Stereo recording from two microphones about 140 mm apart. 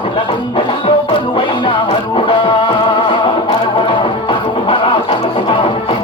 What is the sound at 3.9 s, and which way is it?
Music, 40° left (ahead or behind).